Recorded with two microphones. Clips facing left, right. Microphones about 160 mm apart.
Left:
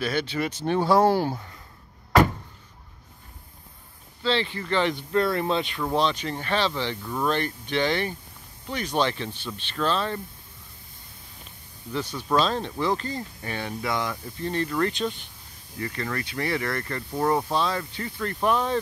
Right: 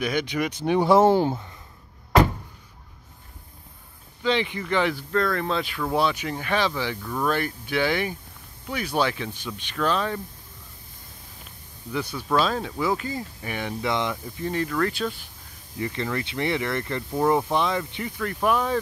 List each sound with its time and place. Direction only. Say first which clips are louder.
0.0 s speech: right 1 dB; 15° right (ahead or behind)
4.2 s speech: right 1 dB; 15° right (ahead or behind)
5.1 s speech: left 2 dB; 10° left (ahead or behind)
5.9 s speech: right 1 dB; 10° right (ahead or behind)
7.0 s speech: right 1 dB; 10° left (ahead or behind)
7.2 s speech: even; 10° right (ahead or behind)
11.9 s speech: even; 10° right (ahead or behind)
14.4 s speech: even; 10° right (ahead or behind)
15.8 s speech: right 3 dB; 20° right (ahead or behind)